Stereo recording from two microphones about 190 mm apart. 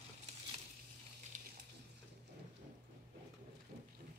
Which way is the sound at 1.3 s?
40° right (ahead or behind).